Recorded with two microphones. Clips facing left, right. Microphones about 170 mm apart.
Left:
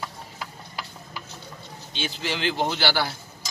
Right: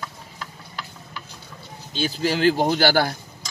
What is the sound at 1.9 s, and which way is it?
Speech, 40° right (ahead or behind).